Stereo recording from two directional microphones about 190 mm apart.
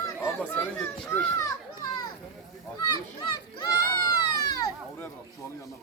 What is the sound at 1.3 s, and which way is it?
Children playing, 20° left (ahead or behind).